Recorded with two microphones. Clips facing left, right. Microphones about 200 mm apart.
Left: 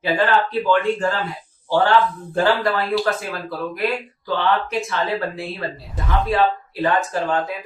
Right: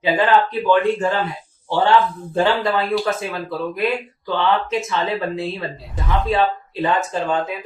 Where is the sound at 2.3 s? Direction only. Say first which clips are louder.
Right 1 dB; 20° right (ahead or behind).